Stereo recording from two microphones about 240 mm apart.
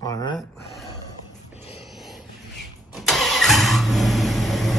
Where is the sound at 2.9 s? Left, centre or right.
Centre.